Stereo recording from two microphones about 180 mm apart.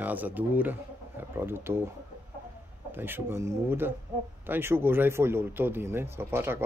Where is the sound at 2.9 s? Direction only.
10° right (ahead or behind).